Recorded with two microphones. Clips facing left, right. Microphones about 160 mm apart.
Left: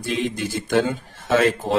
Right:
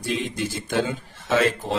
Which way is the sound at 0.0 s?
50° left (ahead or behind).